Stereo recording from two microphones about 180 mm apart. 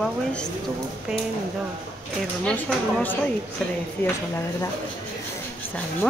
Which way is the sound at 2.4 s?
10° left (ahead or behind).